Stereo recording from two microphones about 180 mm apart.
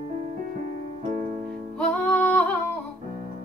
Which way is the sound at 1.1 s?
45° right (ahead or behind).